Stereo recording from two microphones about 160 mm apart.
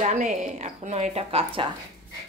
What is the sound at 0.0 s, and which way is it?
Speech, 50° right (ahead or behind).